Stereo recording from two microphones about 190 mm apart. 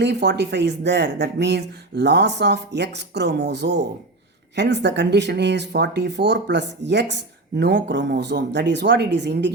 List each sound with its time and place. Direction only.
0.0 s speech: 60° right (ahead or behind)